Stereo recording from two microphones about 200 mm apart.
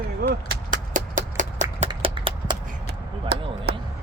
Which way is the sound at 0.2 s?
50° right (ahead or behind).